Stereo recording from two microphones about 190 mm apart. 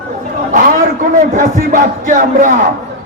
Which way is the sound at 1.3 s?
45° right (ahead or behind).